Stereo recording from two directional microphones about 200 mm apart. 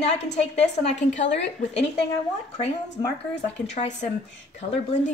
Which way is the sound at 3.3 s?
35° left (ahead or behind).